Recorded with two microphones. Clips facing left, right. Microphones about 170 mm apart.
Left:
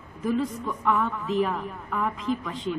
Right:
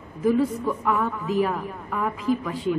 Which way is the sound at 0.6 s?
5° right (ahead or behind).